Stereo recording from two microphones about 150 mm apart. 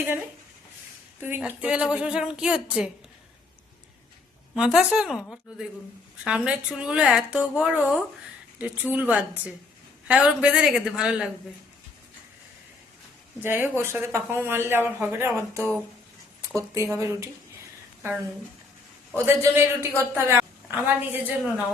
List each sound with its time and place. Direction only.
1.2 s speech: 10° right (ahead or behind)
4.5 s a woman's voice: 5° right (ahead or behind)
13.4 s speech: 15° right (ahead or behind)
19.1 s a woman's voice: 15° right (ahead or behind)